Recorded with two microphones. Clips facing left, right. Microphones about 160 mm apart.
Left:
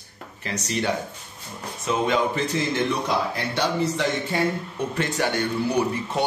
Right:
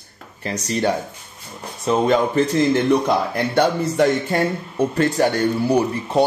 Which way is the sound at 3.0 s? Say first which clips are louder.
Right 5 dB; 55° right (ahead or behind).